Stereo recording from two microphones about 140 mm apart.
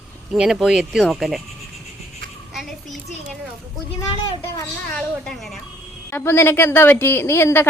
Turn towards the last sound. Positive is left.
turn(degrees=20)  # may be behind; listen again after turning